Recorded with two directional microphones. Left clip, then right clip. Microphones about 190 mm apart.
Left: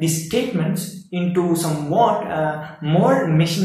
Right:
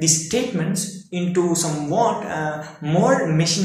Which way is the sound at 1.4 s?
Centre (ahead or behind).